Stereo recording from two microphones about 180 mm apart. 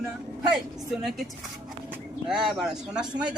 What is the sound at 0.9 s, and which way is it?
A man's voice, centre (ahead or behind).